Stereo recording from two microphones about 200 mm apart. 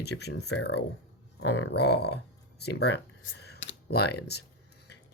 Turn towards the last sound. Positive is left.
turn(degrees=55)  # may be behind; listen again after turning